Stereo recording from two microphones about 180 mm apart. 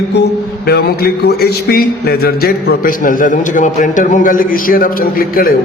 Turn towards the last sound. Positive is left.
turn(degrees=55)  # may be behind; listen again after turning